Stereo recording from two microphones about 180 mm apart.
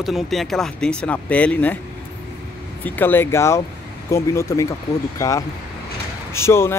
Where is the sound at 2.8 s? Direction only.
10° left (ahead or behind).